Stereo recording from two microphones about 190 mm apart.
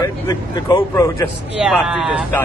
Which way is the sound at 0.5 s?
20° left (ahead or behind).